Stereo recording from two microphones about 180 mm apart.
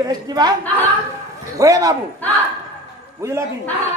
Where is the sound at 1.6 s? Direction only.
20° right (ahead or behind).